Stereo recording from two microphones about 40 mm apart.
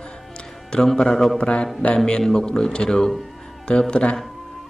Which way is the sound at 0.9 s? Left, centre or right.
Centre.